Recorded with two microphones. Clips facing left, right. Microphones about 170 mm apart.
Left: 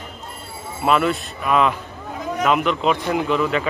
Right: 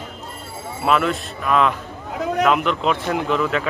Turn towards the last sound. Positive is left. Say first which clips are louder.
# left 1 dB
turn(degrees=0)  # may be behind; listen again after turning